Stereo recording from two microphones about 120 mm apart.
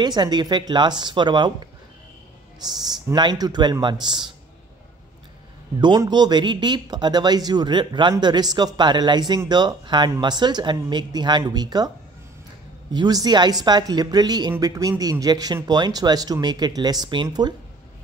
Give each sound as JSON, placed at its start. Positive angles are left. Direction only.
{"t": 0.0, "sound": "speech", "side_deg": -35}
{"t": 2.8, "sound": "speech", "side_deg": -35}
{"t": 5.8, "sound": "speech", "side_deg": -40}
{"t": 12.9, "sound": "speech", "side_deg": -35}